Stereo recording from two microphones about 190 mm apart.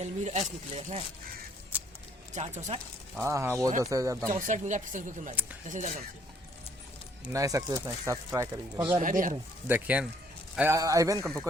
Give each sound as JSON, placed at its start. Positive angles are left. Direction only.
{"t": 0.0, "sound": "speech", "side_deg": -35}
{"t": 2.3, "sound": "speech", "side_deg": -35}
{"t": 3.2, "sound": "speech", "side_deg": -15}
{"t": 4.3, "sound": "speech", "side_deg": -40}
{"t": 7.3, "sound": "speech", "side_deg": -20}
{"t": 9.0, "sound": "speech", "side_deg": -45}
{"t": 9.6, "sound": "speech", "side_deg": -10}